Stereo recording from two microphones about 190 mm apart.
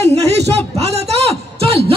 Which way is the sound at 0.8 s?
35° right (ahead or behind).